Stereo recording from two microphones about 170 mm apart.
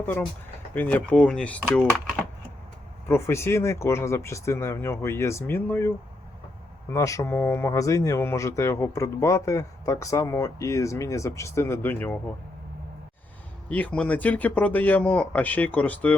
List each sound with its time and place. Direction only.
0.7 s speech: 10° left (ahead or behind)
3.1 s speech: 15° left (ahead or behind)
6.9 s speech: 20° left (ahead or behind)
13.7 s speech: 10° left (ahead or behind)